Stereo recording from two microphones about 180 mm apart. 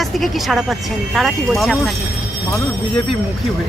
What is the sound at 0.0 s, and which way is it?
Speech, centre (ahead or behind).